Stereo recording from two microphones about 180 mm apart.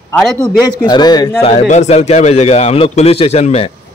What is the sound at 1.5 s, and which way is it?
Speech, 40° left (ahead or behind).